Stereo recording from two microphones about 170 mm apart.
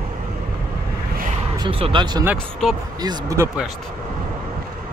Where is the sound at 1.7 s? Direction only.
30° right (ahead or behind).